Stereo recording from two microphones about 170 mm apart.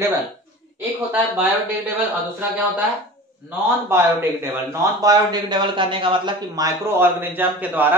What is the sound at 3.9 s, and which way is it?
A man's voice, 15° right (ahead or behind).